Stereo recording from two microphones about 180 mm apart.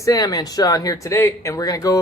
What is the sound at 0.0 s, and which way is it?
Speech, 20° left (ahead or behind).